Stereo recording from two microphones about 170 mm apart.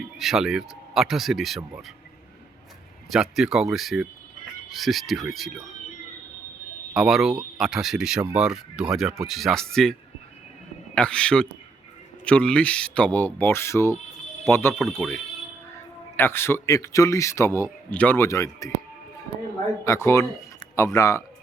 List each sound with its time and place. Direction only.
0.0 s speech: centre (ahead or behind)
3.1 s speech: 5° right (ahead or behind)
6.9 s speech: centre (ahead or behind)
10.9 s speech: 5° left (ahead or behind)
19.8 s speech: 15° left (ahead or behind)